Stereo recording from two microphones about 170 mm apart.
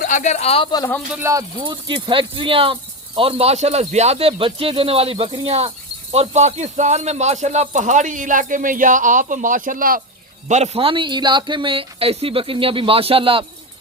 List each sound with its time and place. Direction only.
0.0 s speech: 50° left (ahead or behind); by 0.9 s 25° left (ahead or behind)
1.1 s speech: 15° right (ahead or behind)
1.6 s speech: 30° right (ahead or behind); by 10.0 s 55° right (ahead or behind)
10.5 s speech: 40° right (ahead or behind)